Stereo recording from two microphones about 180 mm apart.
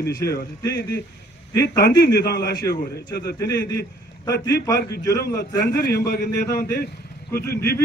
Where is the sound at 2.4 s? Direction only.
20° left (ahead or behind).